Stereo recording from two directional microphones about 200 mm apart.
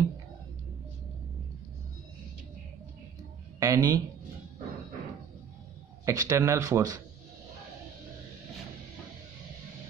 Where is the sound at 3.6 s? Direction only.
15° right (ahead or behind).